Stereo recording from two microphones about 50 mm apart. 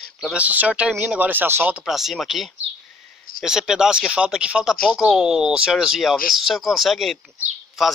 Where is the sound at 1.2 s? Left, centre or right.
Right.